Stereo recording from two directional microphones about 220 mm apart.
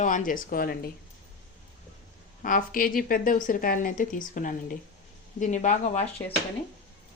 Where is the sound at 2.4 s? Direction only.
40° left (ahead or behind).